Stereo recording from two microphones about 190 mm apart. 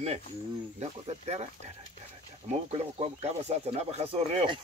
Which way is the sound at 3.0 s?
35° right (ahead or behind).